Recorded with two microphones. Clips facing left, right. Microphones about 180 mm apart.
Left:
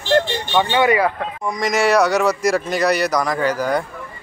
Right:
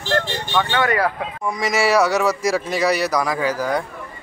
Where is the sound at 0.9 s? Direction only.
5° right (ahead or behind).